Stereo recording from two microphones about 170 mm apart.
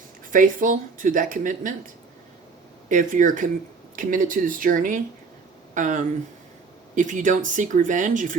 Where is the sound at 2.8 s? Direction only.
50° right (ahead or behind).